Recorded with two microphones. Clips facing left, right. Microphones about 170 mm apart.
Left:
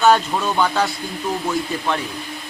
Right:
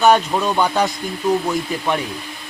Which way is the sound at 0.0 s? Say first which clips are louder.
Right 1 dB; 10° right (ahead or behind).